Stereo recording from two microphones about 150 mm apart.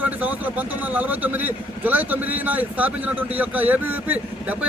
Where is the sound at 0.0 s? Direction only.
10° right (ahead or behind).